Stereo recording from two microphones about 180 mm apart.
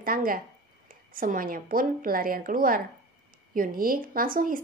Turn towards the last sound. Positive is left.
turn(degrees=-50)  # may be behind; listen again after turning